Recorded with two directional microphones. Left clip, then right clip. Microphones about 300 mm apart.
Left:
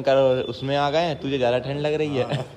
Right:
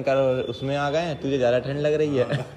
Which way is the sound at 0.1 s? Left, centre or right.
Left.